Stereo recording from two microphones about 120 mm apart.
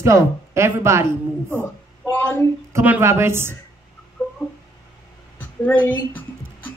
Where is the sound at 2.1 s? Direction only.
15° left (ahead or behind).